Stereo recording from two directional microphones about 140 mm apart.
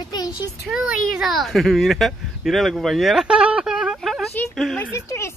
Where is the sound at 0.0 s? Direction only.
30° left (ahead or behind).